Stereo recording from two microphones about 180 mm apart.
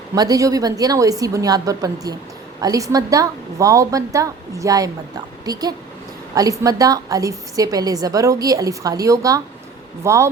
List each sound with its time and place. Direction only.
0.1 s a woman's voice: 20° right (ahead or behind)